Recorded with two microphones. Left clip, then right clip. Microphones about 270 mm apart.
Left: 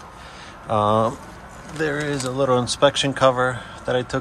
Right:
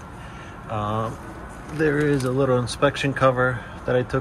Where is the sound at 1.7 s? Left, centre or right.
Centre.